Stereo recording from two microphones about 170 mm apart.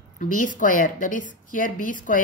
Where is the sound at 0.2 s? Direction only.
50° left (ahead or behind).